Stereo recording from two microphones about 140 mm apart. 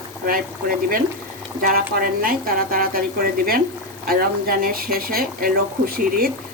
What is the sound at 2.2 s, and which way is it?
Speech, 90° right.